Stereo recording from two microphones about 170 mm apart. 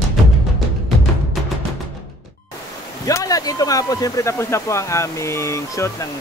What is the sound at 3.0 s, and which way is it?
Speech, 20° left (ahead or behind).